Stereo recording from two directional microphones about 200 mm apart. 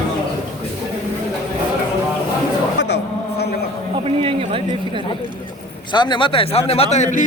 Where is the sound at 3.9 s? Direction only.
25° right (ahead or behind).